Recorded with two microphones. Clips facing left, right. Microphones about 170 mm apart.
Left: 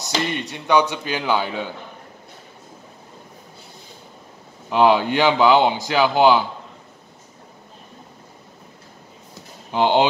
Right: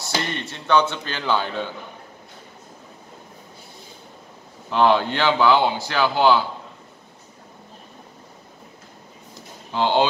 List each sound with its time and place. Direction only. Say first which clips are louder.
0.0 s a man's voice: left 3 dB; 15° left (ahead or behind)
4.6 s a man's voice: left 2 dB; 15° left (ahead or behind)
9.7 s speech: left 2 dB; 15° left (ahead or behind)